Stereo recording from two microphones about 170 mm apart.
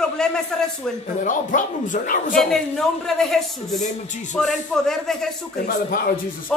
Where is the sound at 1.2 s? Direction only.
50° left (ahead or behind).